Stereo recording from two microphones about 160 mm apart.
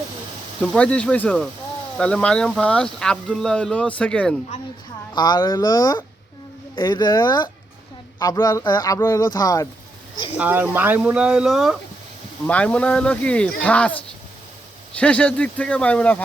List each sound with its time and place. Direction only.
0.8 s speech: 5° left (ahead or behind)
5.1 s speech: 25° left (ahead or behind)
10.3 s speech: 10° right (ahead or behind); by 16.2 s 10° left (ahead or behind)